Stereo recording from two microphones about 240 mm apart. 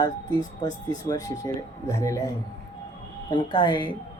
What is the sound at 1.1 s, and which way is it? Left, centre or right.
Speech, centre.